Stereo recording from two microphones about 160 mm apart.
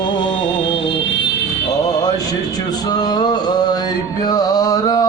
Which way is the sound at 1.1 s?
90° left.